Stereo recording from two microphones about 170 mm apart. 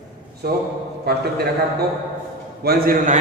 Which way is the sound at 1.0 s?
70° right (ahead or behind).